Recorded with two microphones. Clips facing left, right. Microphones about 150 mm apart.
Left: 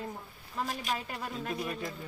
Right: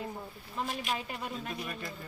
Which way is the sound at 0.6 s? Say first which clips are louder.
Even; 40° left (ahead or behind).